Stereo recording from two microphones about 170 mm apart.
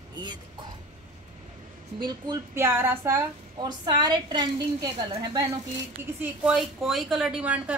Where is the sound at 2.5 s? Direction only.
15° right (ahead or behind).